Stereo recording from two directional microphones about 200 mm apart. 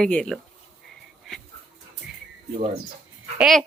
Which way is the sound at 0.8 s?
Centre (ahead or behind).